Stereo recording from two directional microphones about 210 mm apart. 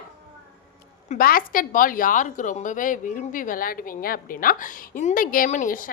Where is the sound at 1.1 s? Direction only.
45° left (ahead or behind).